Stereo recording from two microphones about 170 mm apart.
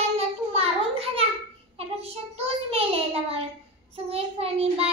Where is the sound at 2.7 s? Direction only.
35° right (ahead or behind).